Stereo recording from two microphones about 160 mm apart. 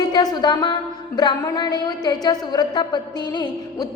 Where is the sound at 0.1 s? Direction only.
25° left (ahead or behind).